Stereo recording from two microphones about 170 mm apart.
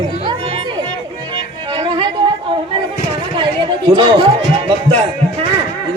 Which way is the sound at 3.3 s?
25° right (ahead or behind).